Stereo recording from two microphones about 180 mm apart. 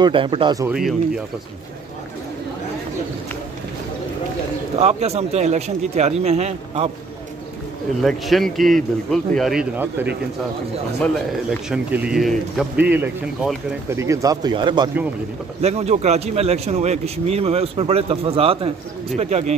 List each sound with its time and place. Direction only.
0.0 s speech: 30° right (ahead or behind)
0.7 s a man's voice: 5° right (ahead or behind)
4.7 s a man's voice: 35° right (ahead or behind)
8.0 s a man's voice: centre (ahead or behind)
11.7 s a man's voice: 5° right (ahead or behind); by 14.9 s 25° right (ahead or behind)
15.6 s a man's voice: 35° right (ahead or behind)